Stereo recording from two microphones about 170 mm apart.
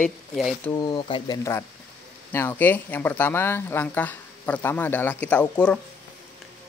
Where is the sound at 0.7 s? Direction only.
25° left (ahead or behind).